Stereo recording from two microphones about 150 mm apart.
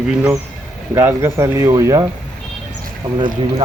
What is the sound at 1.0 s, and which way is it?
Speech, 15° right (ahead or behind).